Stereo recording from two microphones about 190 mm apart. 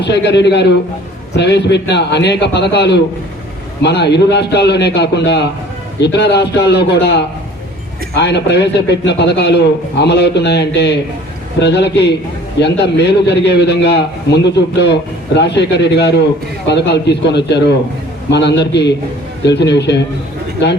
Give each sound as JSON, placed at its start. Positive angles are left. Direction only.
{"t": 0.0, "sound": "a man's voice", "side_deg": 65}